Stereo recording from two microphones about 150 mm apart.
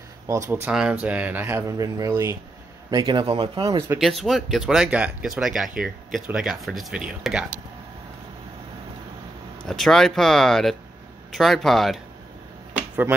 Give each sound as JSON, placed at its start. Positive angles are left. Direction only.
{"t": 0.3, "sound": "a man's voice", "side_deg": -20}
{"t": 4.0, "sound": "speech", "side_deg": 0}
{"t": 9.7, "sound": "speech", "side_deg": 0}